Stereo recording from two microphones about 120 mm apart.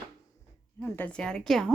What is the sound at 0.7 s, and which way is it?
Speech, 10° left (ahead or behind).